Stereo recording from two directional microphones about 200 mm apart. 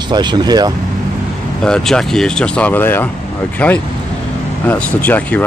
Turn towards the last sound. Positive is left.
turn(degrees=10)  # may be behind; listen again after turning